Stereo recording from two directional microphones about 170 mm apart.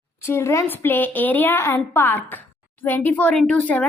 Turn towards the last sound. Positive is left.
turn(degrees=10)  # may be behind; listen again after turning